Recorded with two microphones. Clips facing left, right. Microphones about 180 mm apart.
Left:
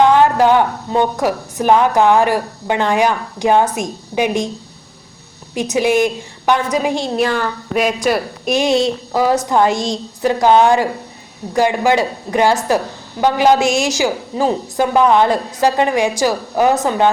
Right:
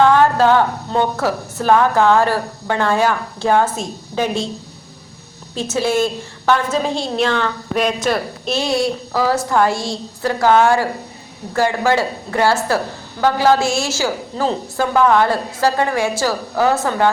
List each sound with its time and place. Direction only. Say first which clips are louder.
0.0 s a woman's voice: left 1 dB; 15° left (ahead or behind)
5.5 s a woman's voice: left 3 dB; 15° left (ahead or behind)
8.4 s a woman's voice: left 4 dB; 20° left (ahead or behind)